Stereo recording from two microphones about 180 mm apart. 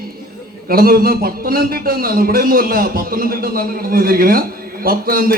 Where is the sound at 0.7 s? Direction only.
55° right (ahead or behind).